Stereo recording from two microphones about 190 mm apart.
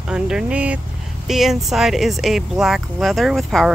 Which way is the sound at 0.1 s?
5° right (ahead or behind).